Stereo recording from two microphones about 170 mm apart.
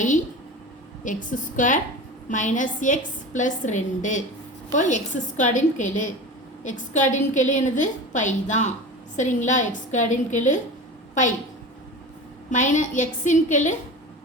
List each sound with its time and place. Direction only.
1.0 s a woman's voice: 50° left (ahead or behind)
12.5 s a woman's voice: 45° left (ahead or behind)